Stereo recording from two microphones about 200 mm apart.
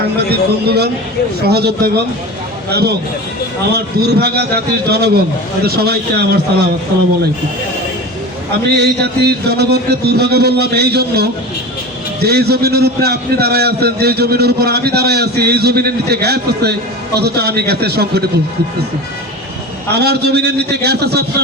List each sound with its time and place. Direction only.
0.3 s a man's voice: 50° right (ahead or behind)
3.7 s a man's voice: 55° right (ahead or behind)
8.7 s a man's voice: 55° right (ahead or behind)
19.9 s a man's voice: 55° right (ahead or behind)